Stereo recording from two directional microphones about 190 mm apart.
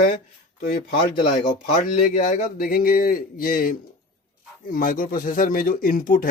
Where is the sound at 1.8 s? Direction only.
40° left (ahead or behind).